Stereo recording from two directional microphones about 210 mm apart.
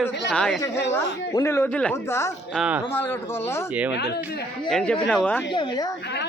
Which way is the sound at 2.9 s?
10° left (ahead or behind).